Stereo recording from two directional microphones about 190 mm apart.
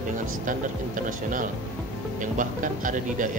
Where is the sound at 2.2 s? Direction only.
45° right (ahead or behind).